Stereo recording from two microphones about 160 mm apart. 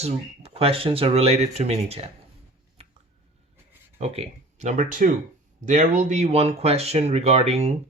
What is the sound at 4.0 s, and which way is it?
Speech, 45° right (ahead or behind).